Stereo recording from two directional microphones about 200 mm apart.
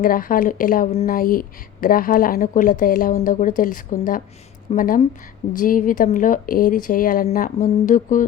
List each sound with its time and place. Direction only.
0.0 s a woman's voice: 45° left (ahead or behind)